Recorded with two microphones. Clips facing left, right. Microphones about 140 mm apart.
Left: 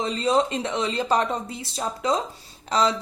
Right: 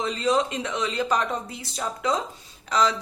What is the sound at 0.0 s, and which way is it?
A woman's voice, 25° left (ahead or behind).